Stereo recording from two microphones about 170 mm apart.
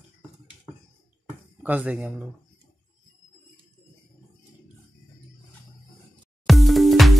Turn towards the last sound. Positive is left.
turn(degrees=0)  # may be behind; listen again after turning